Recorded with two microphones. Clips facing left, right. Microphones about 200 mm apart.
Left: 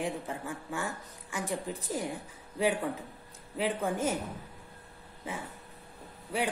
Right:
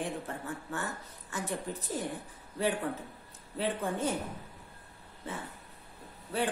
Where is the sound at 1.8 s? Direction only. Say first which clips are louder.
Left 1 dB; 90° left.